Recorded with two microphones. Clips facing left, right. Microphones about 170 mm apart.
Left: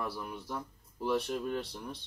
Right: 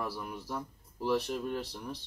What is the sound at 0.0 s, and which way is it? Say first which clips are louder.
Speech: even; centre (ahead or behind).